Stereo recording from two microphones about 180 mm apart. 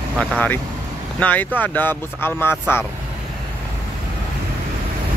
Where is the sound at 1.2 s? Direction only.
10° left (ahead or behind).